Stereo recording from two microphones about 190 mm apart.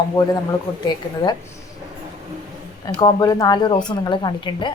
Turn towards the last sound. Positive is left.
turn(degrees=25)  # may be behind; listen again after turning